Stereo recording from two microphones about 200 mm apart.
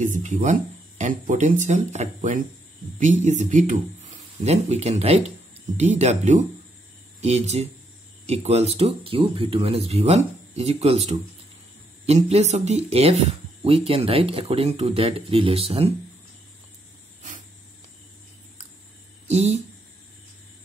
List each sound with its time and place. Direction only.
0.0 s speech: 40° right (ahead or behind)
19.2 s speech: 35° right (ahead or behind)